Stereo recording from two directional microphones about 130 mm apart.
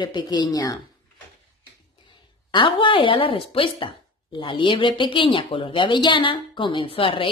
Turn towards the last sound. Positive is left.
turn(degrees=45)  # may be behind; listen again after turning